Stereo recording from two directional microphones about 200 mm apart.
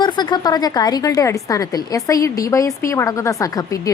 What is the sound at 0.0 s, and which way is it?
A woman's voice, 20° left (ahead or behind).